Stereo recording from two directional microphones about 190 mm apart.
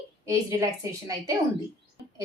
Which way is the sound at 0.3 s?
15° right (ahead or behind).